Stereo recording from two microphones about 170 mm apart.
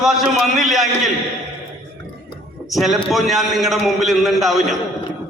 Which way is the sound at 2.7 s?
Centre (ahead or behind).